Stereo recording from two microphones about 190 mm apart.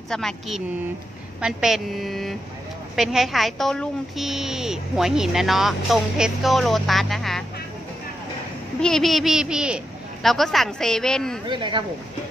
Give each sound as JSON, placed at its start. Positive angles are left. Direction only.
{"t": 0.1, "sound": "a woman's voice", "side_deg": 0}
{"t": 8.8, "sound": "a woman's voice", "side_deg": 0}
{"t": 11.4, "sound": "speech", "side_deg": -25}